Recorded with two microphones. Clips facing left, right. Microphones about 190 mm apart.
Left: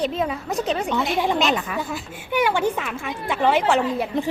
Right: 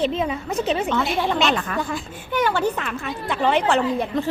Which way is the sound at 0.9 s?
15° left (ahead or behind).